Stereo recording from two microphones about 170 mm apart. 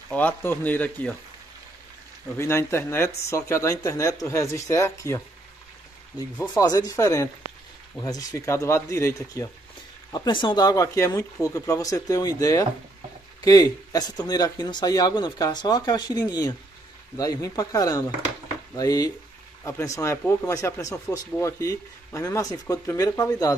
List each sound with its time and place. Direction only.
0.1 s speech: 10° left (ahead or behind)
2.3 s speech: 15° left (ahead or behind)
6.4 s speech: 20° left (ahead or behind)